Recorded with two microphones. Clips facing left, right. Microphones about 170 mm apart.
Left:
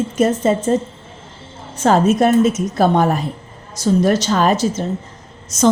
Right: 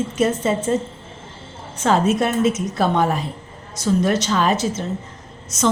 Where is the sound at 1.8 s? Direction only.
40° left (ahead or behind).